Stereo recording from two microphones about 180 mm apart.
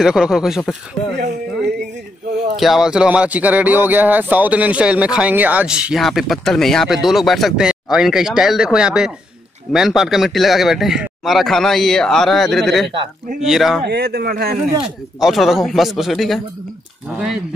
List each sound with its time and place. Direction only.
0.0 s speech: 5° right (ahead or behind)
2.5 s speech: centre (ahead or behind)
13.8 s speech: 65° right (ahead or behind)
14.8 s speech: centre (ahead or behind)